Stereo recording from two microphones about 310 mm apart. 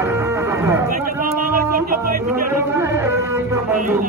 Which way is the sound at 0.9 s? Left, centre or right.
Right.